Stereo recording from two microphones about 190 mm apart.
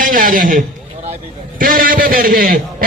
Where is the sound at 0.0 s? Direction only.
45° right (ahead or behind).